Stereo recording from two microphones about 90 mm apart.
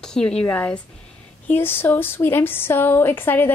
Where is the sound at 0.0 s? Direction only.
5° left (ahead or behind).